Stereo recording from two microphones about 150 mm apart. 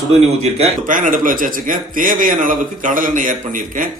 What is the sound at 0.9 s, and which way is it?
A man's voice, 65° right (ahead or behind).